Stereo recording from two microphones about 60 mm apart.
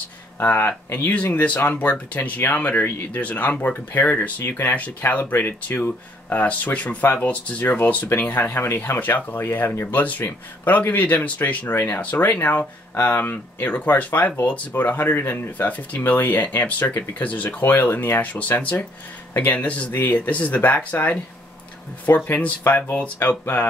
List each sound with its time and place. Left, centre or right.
0.4 s speech: left
11.7 s speech: left
12.0 s speech: left